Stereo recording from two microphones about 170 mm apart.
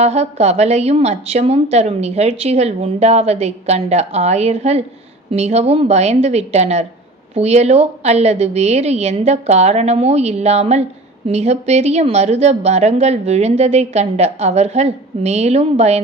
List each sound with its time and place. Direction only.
0.0 s a woman's voice: 40° right (ahead or behind)